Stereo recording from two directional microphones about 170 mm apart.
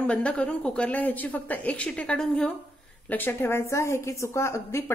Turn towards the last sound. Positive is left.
turn(degrees=15)  # may be behind; listen again after turning